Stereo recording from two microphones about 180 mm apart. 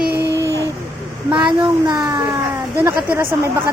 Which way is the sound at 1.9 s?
20° right (ahead or behind).